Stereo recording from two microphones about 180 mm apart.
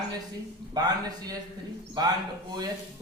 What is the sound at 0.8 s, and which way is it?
Speech, 20° right (ahead or behind).